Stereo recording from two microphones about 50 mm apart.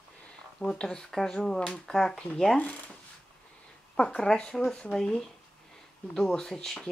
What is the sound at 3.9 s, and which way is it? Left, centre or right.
Speech, centre.